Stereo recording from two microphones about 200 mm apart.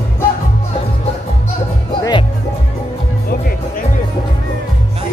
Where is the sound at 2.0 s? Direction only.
20° left (ahead or behind).